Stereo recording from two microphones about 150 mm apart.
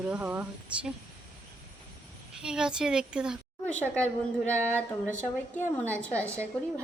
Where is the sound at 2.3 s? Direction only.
5° right (ahead or behind).